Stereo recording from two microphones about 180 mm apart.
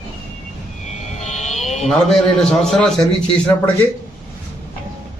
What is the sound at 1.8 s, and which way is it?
A man's voice, centre (ahead or behind).